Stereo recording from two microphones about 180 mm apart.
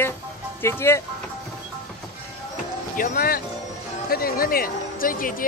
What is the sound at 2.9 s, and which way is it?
Speech, 55° left (ahead or behind).